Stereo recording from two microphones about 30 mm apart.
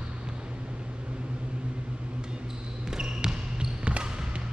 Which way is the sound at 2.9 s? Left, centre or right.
Right.